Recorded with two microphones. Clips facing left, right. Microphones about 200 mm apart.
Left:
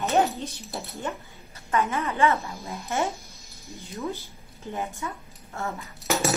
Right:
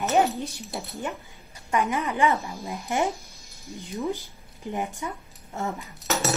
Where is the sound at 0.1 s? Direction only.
15° right (ahead or behind).